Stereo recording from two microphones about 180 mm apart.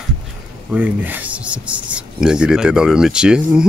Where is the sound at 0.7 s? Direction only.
10° right (ahead or behind).